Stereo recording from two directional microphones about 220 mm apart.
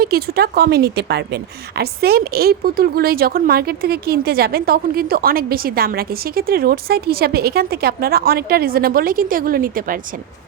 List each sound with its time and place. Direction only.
0.0 s speech: 45° right (ahead or behind)